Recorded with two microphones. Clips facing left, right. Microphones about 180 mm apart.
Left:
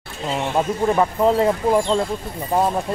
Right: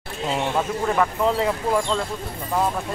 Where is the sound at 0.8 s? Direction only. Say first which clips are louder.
Left 4 dB; 25° left (ahead or behind).